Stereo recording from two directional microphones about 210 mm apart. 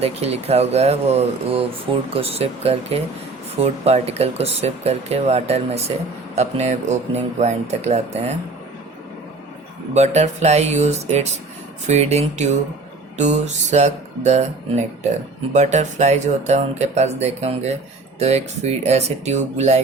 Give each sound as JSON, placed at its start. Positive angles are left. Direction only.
{"t": 0.0, "sound": "speech", "side_deg": -30}
{"t": 9.9, "sound": "speech", "side_deg": -30}